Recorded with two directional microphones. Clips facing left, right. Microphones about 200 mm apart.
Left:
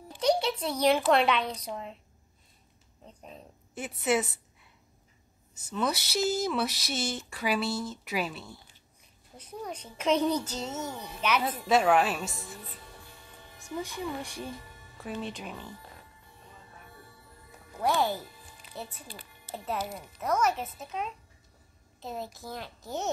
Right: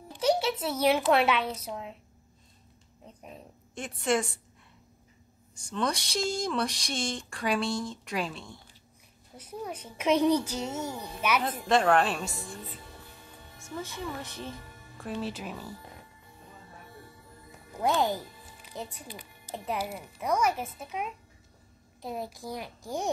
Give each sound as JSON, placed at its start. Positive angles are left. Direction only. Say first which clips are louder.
{"t": 0.2, "sound": "a woman's voice", "louder": "even", "side_deg": -5}
{"t": 3.2, "sound": "speech", "louder": "right 1 dB", "side_deg": -10}
{"t": 3.7, "sound": "speech", "louder": "even", "side_deg": 5}
{"t": 5.5, "sound": "speech", "louder": "even", "side_deg": 5}
{"t": 9.4, "sound": "speech", "louder": "right 1 dB", "side_deg": -10}
{"t": 11.6, "sound": "speech", "louder": "even", "side_deg": 5}
{"t": 13.7, "sound": "speech", "louder": "left 2 dB", "side_deg": 15}
{"t": 15.0, "sound": "speech", "louder": "right 2 dB", "side_deg": 0}
{"t": 17.7, "sound": "speech", "louder": "right 1 dB", "side_deg": -20}